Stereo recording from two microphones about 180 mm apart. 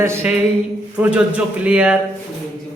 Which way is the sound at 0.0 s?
15° right (ahead or behind).